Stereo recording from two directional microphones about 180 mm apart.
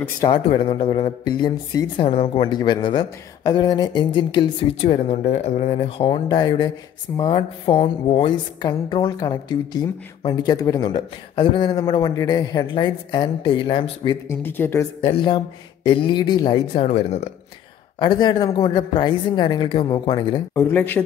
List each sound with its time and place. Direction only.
0.3 s a woman's voice: 30° left (ahead or behind)
14.4 s speech: 10° left (ahead or behind)
15.0 s a woman's voice: 25° left (ahead or behind)
17.9 s a woman's voice: 25° left (ahead or behind)
20.5 s speech: 10° left (ahead or behind)